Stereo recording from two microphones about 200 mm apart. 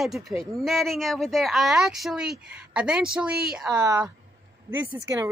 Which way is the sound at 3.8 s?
15° right (ahead or behind).